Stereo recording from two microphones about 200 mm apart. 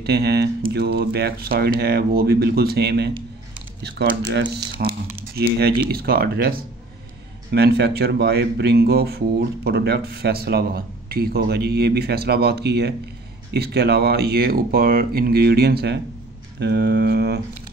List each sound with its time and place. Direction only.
0.0 s speech: 55° right (ahead or behind)
3.8 s mantra: 55° right (ahead or behind)
4.8 s speech: 45° right (ahead or behind)
7.5 s speech: 55° right (ahead or behind)
16.5 s mantra: 55° right (ahead or behind)